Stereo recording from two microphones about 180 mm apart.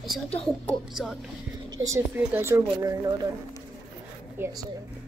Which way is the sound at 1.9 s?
15° right (ahead or behind).